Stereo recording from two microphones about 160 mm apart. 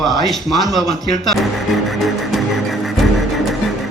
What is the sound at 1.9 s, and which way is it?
Music, centre (ahead or behind).